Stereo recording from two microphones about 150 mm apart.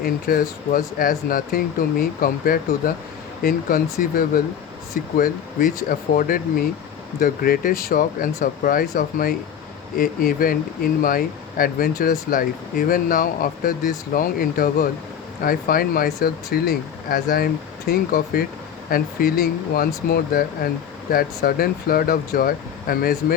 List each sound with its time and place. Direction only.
0.0 s speech: 75° left (ahead or behind)
5.1 s speech: 70° left (ahead or behind)